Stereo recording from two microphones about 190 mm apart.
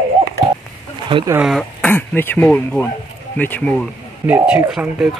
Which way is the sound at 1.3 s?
Centre (ahead or behind).